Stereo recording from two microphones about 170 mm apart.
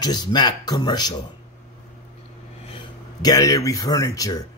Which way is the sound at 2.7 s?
25° left (ahead or behind).